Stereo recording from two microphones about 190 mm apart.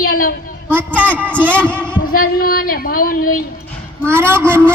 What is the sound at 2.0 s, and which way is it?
Speech, 50° left (ahead or behind).